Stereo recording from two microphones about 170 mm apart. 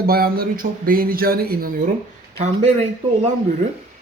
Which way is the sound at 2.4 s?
40° right (ahead or behind).